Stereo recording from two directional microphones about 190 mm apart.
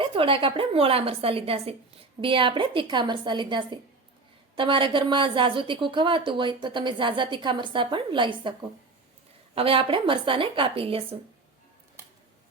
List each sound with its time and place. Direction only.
0.0 s a woman's voice: 30° right (ahead or behind)
9.6 s a woman's voice: 30° right (ahead or behind)